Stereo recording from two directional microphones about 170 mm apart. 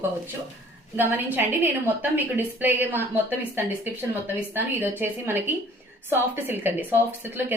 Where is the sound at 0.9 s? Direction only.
10° right (ahead or behind).